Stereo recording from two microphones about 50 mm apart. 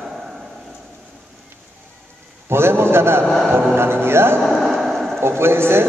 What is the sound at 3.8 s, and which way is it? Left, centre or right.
Music, right.